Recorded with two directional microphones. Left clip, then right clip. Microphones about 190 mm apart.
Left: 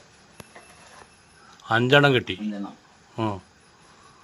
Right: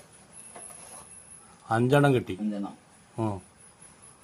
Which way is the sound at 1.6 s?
5° right (ahead or behind).